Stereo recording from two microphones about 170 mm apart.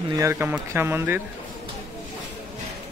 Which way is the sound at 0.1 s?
15° right (ahead or behind).